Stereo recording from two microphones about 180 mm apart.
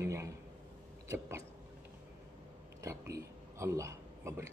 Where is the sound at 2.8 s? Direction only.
15° right (ahead or behind).